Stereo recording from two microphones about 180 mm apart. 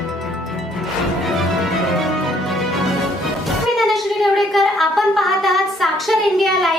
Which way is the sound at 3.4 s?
Centre (ahead or behind).